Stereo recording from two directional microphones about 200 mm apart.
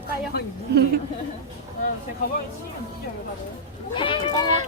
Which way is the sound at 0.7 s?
55° right (ahead or behind).